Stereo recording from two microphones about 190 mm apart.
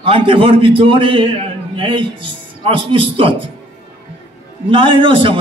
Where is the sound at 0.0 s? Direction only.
25° right (ahead or behind).